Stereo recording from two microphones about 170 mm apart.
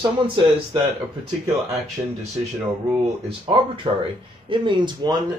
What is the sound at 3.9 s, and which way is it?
Speech, 30° right (ahead or behind).